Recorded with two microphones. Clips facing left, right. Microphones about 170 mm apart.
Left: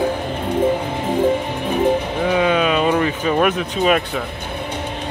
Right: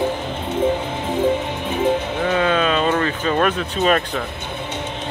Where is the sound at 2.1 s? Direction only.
10° left (ahead or behind).